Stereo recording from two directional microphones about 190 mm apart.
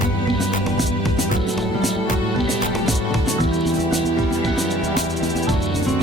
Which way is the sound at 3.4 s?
Centre (ahead or behind).